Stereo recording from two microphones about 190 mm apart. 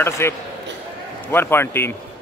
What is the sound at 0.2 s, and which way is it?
Speech, 15° left (ahead or behind).